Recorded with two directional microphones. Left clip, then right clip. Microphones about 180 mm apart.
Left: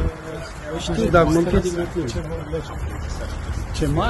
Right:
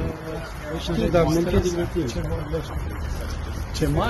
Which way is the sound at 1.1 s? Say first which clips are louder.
Left 4 dB; 40° left (ahead or behind).